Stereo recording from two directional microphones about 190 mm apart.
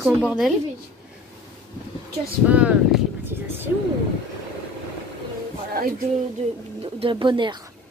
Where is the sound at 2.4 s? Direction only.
5° right (ahead or behind).